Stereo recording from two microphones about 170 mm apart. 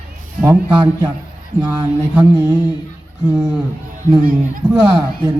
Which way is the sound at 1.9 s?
5° right (ahead or behind).